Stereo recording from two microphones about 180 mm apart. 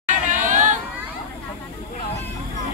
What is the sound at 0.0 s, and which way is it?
Chatter, 45° right (ahead or behind).